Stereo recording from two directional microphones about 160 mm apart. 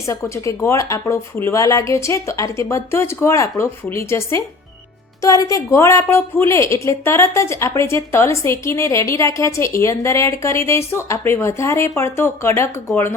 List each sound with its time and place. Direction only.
0.0 s a woman's voice: 20° left (ahead or behind)